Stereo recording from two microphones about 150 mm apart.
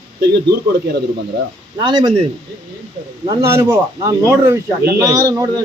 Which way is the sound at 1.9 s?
25° right (ahead or behind).